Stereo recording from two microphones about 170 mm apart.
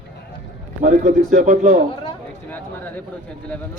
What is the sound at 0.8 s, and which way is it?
Speech, 50° right (ahead or behind).